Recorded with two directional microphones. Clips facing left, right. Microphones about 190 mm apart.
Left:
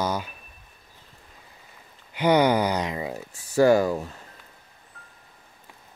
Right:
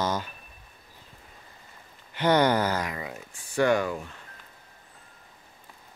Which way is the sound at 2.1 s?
10° left (ahead or behind).